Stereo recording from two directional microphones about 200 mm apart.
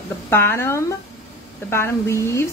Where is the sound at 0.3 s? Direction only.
10° left (ahead or behind).